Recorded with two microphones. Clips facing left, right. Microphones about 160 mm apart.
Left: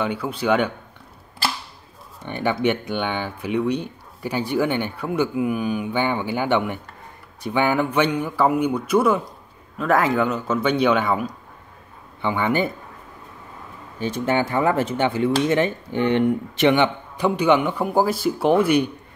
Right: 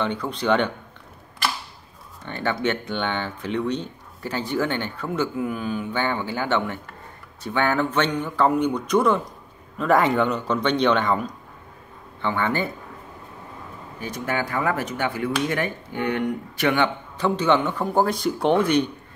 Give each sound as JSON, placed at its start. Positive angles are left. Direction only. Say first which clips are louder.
{"t": 0.0, "sound": "speech", "louder": "left 1 dB", "side_deg": 10}
{"t": 2.2, "sound": "a man's voice", "louder": "left 3 dB", "side_deg": 15}
{"t": 13.9, "sound": "speech", "louder": "left 6 dB", "side_deg": 25}